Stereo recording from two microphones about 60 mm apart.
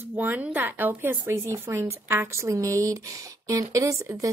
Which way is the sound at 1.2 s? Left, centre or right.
Right.